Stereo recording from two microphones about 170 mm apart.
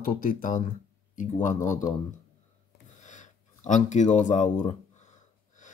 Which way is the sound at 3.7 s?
45° left (ahead or behind).